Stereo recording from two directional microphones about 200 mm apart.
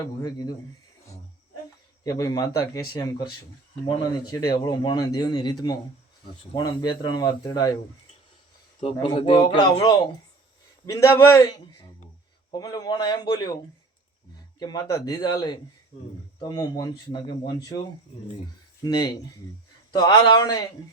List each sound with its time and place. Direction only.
0.0 s speech: 20° left (ahead or behind)
2.0 s speech: 15° left (ahead or behind)
4.3 s speech: 20° left (ahead or behind)
8.8 s speech: 25° left (ahead or behind)
14.6 s speech: 20° left (ahead or behind)
18.8 s speech: 20° left (ahead or behind)